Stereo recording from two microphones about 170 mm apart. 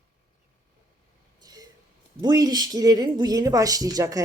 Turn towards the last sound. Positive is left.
turn(degrees=-20)  # may be behind; listen again after turning